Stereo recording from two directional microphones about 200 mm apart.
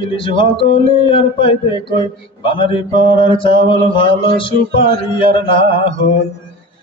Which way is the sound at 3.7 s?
25° left (ahead or behind).